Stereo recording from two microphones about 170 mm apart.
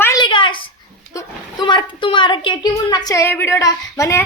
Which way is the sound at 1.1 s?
20° left (ahead or behind).